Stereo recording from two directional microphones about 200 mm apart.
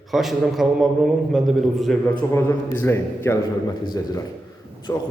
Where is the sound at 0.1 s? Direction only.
Centre (ahead or behind).